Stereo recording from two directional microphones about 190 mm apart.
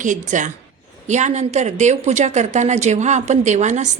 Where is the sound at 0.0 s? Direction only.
40° right (ahead or behind).